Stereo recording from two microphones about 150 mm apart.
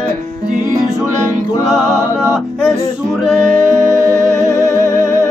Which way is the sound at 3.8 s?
20° right (ahead or behind).